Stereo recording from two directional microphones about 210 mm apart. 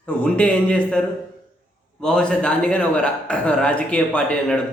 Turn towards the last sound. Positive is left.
turn(degrees=5)  # may be behind; listen again after turning